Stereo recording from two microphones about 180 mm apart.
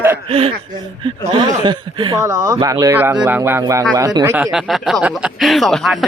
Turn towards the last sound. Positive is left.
turn(degrees=0)  # may be behind; listen again after turning